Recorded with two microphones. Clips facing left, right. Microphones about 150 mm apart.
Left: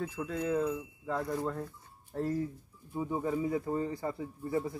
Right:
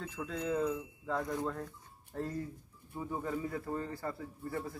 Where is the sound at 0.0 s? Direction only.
10° left (ahead or behind).